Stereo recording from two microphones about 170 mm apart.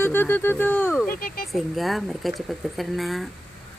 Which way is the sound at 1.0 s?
60° left (ahead or behind).